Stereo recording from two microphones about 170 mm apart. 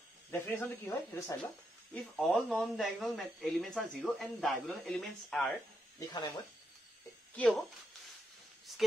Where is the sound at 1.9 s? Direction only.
5° left (ahead or behind).